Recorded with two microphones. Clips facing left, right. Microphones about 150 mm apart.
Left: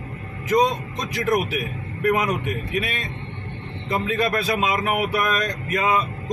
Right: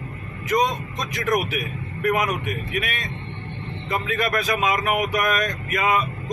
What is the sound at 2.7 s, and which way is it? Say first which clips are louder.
Speech: left 2 dB; 30° left (ahead or behind).